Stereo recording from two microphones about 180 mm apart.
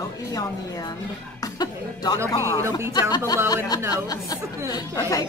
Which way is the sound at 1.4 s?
20° left (ahead or behind).